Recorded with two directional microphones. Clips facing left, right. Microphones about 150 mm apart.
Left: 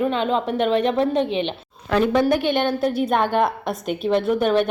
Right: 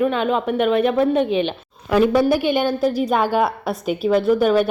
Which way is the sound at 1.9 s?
5° right (ahead or behind).